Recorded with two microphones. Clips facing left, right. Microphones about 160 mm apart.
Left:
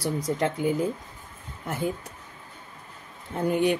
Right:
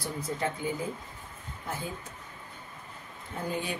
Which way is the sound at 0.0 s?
75° left (ahead or behind).